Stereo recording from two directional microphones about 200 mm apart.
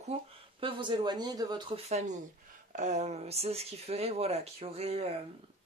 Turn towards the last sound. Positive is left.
turn(degrees=-30)  # may be behind; listen again after turning